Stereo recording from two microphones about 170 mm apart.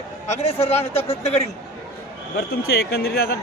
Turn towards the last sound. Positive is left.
turn(degrees=65)  # may be behind; listen again after turning